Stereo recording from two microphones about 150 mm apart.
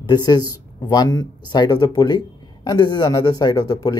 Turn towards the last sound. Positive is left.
turn(degrees=25)  # may be behind; listen again after turning